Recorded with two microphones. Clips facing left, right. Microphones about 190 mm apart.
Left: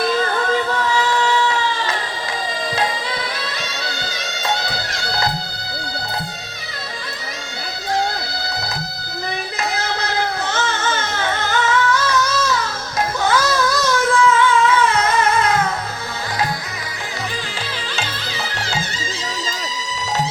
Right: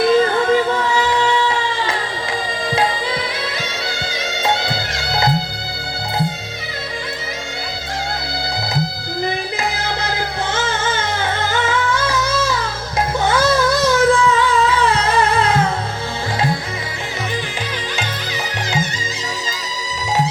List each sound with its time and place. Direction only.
0.0 s music: 25° right (ahead or behind)
9.2 s music: 25° right (ahead or behind)
10.5 s singing: 25° right (ahead or behind)
13.1 s music: 25° right (ahead or behind)